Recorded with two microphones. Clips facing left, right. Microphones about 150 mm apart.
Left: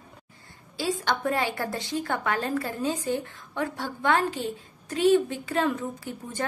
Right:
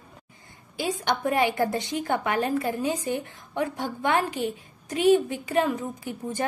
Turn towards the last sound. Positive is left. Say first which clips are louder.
# right 4 dB
turn(degrees=-15)  # may be behind; listen again after turning